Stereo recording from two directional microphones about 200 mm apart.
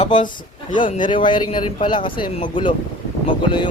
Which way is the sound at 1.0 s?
25° left (ahead or behind).